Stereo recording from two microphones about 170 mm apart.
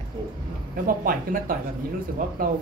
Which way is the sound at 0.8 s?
55° right (ahead or behind).